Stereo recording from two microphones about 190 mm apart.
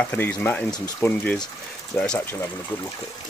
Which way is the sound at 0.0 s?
10° left (ahead or behind).